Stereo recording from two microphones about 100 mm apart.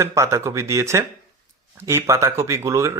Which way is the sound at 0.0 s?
30° right (ahead or behind).